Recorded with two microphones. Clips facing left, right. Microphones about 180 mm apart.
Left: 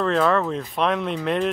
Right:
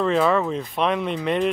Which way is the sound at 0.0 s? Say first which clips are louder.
Right 1 dB; 5° right (ahead or behind).